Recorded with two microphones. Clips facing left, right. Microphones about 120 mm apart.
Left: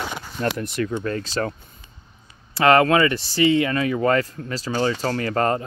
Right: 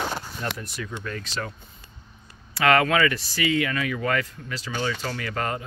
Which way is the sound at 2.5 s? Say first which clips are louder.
Left 5 dB; 30° left (ahead or behind).